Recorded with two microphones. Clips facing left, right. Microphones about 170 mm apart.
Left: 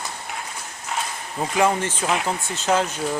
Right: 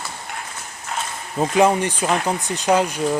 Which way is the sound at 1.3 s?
20° right (ahead or behind).